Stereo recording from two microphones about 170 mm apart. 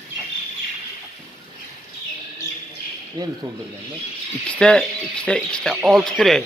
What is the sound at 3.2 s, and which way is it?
Speech, 25° right (ahead or behind).